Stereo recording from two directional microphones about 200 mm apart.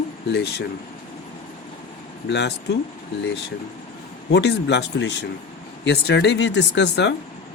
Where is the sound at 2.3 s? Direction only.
55° left (ahead or behind).